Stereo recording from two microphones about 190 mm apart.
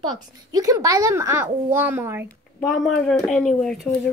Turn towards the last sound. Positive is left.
turn(degrees=5)  # may be behind; listen again after turning